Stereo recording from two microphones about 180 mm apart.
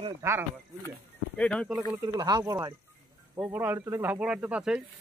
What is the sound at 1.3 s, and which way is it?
Speech, 5° left (ahead or behind).